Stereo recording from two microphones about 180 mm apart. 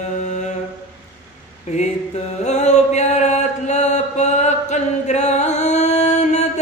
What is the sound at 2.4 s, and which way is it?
Mantra, 40° left (ahead or behind).